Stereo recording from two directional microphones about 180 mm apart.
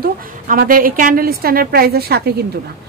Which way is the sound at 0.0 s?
50° right (ahead or behind).